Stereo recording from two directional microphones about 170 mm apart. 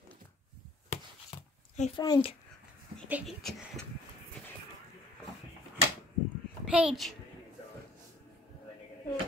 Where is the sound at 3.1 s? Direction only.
10° right (ahead or behind).